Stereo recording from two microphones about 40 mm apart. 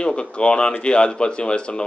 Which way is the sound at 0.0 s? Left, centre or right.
Left.